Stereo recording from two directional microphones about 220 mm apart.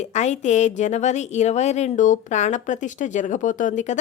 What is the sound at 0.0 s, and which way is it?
Speech, 30° left (ahead or behind).